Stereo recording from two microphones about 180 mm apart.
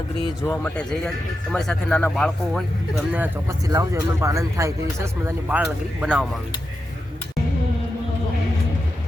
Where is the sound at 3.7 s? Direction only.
20° right (ahead or behind).